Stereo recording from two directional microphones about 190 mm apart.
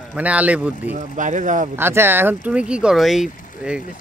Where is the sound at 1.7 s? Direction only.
10° right (ahead or behind).